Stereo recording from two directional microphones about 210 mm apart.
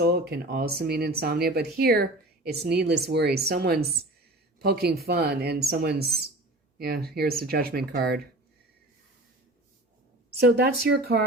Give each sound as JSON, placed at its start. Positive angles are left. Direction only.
{"t": 0.0, "sound": "speech", "side_deg": -50}
{"t": 10.4, "sound": "speech", "side_deg": -50}